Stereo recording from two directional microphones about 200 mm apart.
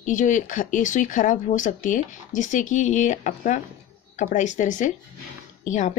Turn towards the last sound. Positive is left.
turn(degrees=35)  # may be behind; listen again after turning